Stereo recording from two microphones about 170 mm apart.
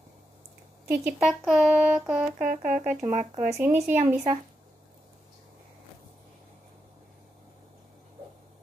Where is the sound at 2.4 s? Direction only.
50° right (ahead or behind).